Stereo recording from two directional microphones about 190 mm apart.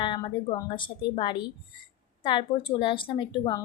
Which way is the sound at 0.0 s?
25° left (ahead or behind).